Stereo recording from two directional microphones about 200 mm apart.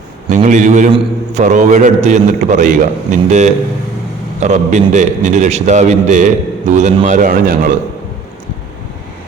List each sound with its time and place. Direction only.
0.3 s a man's voice: 40° right (ahead or behind)